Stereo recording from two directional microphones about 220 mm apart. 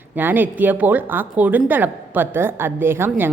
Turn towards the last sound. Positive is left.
turn(degrees=-10)  # may be behind; listen again after turning